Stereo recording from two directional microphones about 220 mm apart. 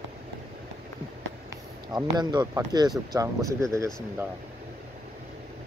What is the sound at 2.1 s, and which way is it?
Speech, 20° right (ahead or behind).